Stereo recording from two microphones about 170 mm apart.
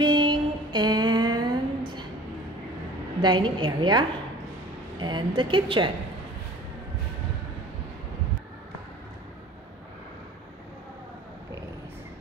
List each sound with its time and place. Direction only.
0.0 s female singing: 25° right (ahead or behind)
3.2 s a woman's voice: 25° right (ahead or behind)
5.0 s a woman's voice: 25° right (ahead or behind)